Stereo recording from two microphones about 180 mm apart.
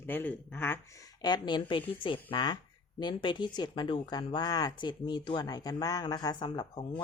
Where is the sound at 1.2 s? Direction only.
25° left (ahead or behind).